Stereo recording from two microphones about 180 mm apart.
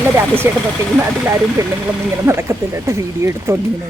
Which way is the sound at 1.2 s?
15° right (ahead or behind).